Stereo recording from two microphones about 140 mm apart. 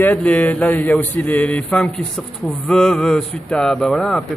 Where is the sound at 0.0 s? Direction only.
10° left (ahead or behind).